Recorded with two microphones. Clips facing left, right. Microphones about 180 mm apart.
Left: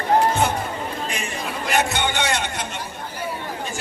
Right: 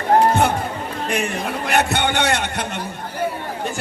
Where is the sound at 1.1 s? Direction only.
60° right (ahead or behind).